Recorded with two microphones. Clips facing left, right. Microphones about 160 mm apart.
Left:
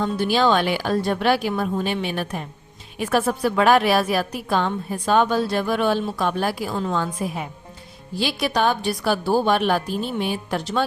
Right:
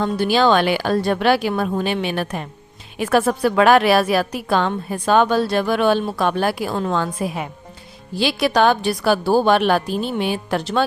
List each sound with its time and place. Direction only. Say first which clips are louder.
0.0 s a woman's voice: right 3 dB; 85° right
8.2 s a woman's voice: right 5 dB; 90° right